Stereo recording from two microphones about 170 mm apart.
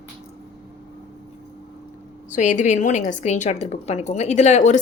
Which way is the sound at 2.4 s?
45° left (ahead or behind).